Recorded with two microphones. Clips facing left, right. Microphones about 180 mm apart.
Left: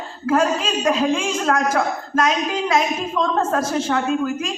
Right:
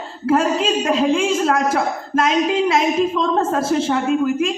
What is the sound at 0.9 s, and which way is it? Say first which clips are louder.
A woman's voice: right 1 dB; 25° right (ahead or behind).